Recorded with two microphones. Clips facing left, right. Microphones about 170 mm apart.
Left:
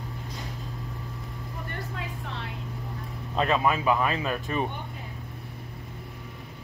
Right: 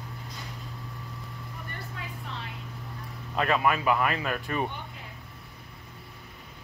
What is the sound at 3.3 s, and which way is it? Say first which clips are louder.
Speech: left 1 dB; 20° left (ahead or behind).